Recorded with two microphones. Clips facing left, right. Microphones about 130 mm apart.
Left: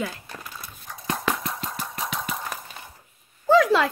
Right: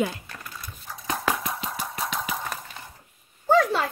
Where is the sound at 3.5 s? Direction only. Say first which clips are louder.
Left 3 dB; 90° left.